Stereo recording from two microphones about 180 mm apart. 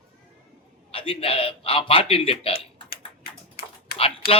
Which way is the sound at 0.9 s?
30° left (ahead or behind).